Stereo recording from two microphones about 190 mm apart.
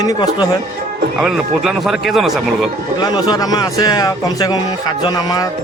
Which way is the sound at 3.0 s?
20° left (ahead or behind).